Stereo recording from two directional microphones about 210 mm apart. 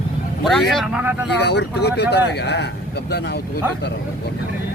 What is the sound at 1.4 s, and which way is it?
Speech, 55° left (ahead or behind).